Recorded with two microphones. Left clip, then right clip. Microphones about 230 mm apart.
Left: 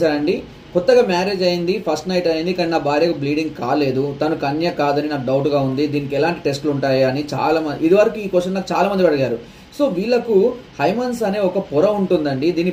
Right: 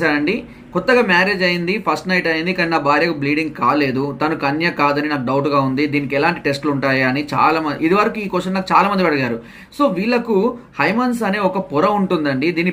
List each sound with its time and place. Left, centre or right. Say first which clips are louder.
0.0 s speech: even; centre